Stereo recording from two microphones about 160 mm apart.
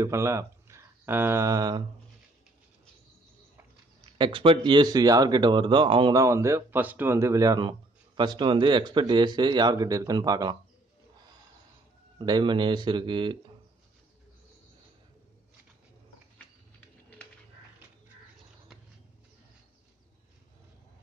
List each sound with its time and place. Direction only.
0.0 s speech: 20° right (ahead or behind)
4.2 s speech: 35° right (ahead or behind)
6.2 s speech: 20° right (ahead or behind)
12.2 s speech: 25° right (ahead or behind)